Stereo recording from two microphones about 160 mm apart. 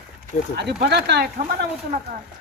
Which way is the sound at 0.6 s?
90° right.